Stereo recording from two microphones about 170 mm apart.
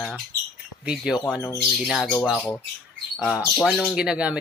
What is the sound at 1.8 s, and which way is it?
Speech, centre (ahead or behind).